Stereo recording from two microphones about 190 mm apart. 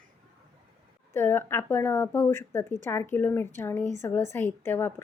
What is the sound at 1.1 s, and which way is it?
A woman's voice, 10° left (ahead or behind).